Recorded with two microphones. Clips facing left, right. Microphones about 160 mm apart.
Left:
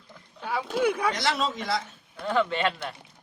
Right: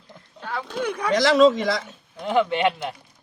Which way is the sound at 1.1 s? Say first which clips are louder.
Right 12 dB; 90° right.